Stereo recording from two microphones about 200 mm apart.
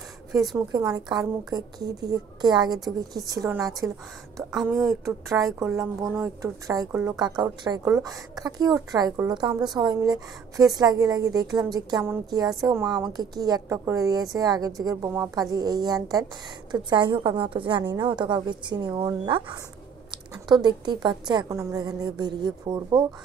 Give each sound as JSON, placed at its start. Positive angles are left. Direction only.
{"t": 0.3, "sound": "a woman's voice", "side_deg": 0}
{"t": 0.7, "sound": "a woman's voice", "side_deg": -20}
{"t": 4.4, "sound": "a woman's voice", "side_deg": 0}
{"t": 5.6, "sound": "a woman's voice", "side_deg": -15}
{"t": 20.4, "sound": "a woman's voice", "side_deg": -20}